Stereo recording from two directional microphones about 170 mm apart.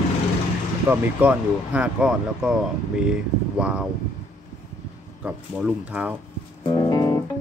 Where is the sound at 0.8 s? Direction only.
10° right (ahead or behind).